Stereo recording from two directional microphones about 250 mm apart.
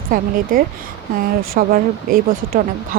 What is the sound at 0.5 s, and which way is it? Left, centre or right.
Speech, right.